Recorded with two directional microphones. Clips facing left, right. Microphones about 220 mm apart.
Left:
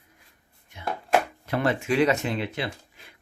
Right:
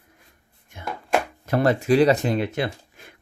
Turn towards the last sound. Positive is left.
turn(degrees=-45)  # may be behind; listen again after turning